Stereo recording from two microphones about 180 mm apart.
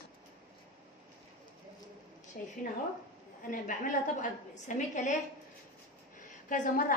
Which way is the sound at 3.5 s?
50° left (ahead or behind).